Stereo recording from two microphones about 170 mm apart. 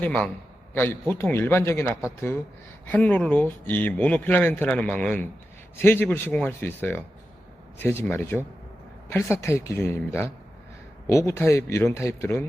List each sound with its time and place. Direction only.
0.0 s speech: 5° left (ahead or behind)